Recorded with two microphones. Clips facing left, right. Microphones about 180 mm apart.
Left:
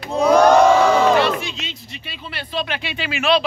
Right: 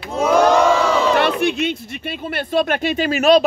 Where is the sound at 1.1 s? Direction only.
60° right (ahead or behind).